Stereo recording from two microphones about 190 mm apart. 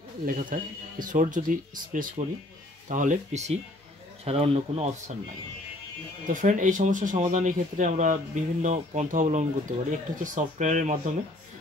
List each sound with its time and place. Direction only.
0.2 s speech: 45° right (ahead or behind)
6.2 s speech: 45° right (ahead or behind)